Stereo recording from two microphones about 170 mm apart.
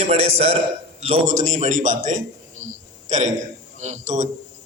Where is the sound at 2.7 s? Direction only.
45° right (ahead or behind).